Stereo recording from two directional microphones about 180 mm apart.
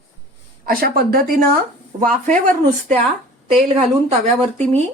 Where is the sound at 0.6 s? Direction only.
55° right (ahead or behind).